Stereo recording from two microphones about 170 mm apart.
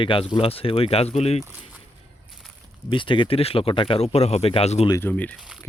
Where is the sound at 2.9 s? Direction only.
30° left (ahead or behind).